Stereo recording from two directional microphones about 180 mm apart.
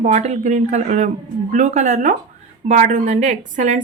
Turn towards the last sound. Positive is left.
turn(degrees=-45)  # may be behind; listen again after turning